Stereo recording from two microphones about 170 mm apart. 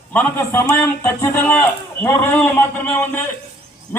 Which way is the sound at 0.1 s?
10° left (ahead or behind).